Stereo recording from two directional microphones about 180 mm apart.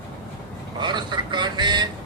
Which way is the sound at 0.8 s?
25° right (ahead or behind).